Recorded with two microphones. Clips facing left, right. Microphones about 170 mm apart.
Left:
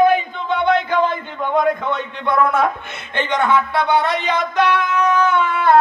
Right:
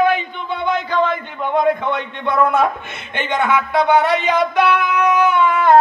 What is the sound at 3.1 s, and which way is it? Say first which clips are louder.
A man's voice: left 1 dB; 20° right (ahead or behind).